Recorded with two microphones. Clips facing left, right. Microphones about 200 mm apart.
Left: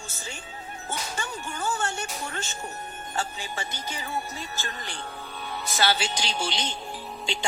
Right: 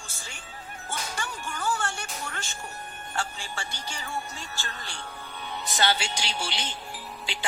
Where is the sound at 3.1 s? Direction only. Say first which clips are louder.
Left 2 dB; 15° left (ahead or behind).